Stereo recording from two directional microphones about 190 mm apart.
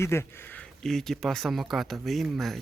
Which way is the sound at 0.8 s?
Centre (ahead or behind).